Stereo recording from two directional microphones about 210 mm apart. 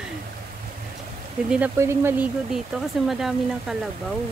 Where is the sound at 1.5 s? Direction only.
5° right (ahead or behind).